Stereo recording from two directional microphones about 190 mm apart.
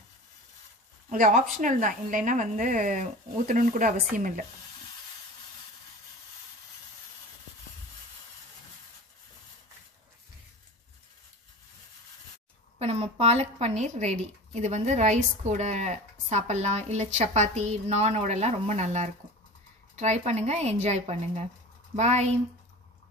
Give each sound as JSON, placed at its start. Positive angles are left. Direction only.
{"t": 1.1, "sound": "a woman's voice", "side_deg": -45}
{"t": 12.7, "sound": "speech", "side_deg": -30}